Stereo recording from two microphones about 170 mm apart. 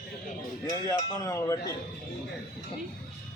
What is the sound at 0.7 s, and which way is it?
Speech, 20° left (ahead or behind).